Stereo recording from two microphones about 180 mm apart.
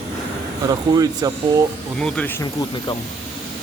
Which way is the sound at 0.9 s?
20° right (ahead or behind).